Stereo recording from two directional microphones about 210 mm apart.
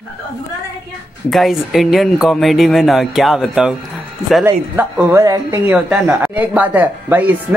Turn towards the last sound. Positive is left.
turn(degrees=-10)  # may be behind; listen again after turning